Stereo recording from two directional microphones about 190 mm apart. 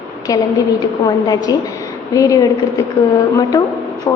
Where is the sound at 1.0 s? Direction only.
20° left (ahead or behind).